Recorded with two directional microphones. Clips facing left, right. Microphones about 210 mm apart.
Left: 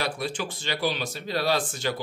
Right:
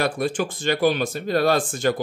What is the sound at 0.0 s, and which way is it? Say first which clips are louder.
Speech: right 7 dB; 50° right (ahead or behind).